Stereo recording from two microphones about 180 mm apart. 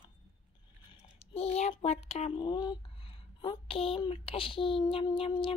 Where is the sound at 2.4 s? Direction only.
25° left (ahead or behind).